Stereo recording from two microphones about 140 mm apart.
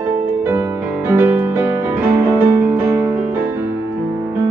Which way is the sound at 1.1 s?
15° right (ahead or behind).